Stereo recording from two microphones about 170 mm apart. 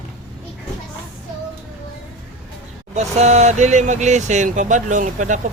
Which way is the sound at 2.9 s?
40° right (ahead or behind).